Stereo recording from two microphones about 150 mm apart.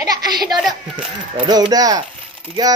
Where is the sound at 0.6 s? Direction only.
Centre (ahead or behind).